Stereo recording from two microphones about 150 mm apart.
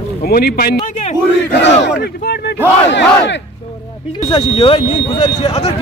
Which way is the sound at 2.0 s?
90° left.